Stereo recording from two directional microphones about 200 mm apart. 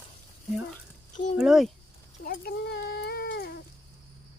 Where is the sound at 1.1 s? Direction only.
40° left (ahead or behind).